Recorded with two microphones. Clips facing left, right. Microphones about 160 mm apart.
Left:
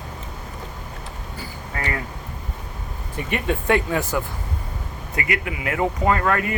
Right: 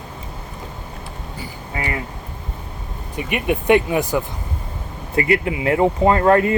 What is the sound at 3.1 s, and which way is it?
Speech, 15° right (ahead or behind).